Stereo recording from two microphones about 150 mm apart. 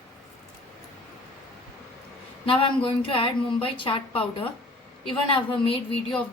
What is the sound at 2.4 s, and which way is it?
A woman's voice, 35° left (ahead or behind).